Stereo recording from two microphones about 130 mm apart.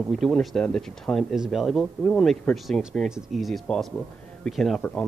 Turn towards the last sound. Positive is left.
turn(degrees=5)  # may be behind; listen again after turning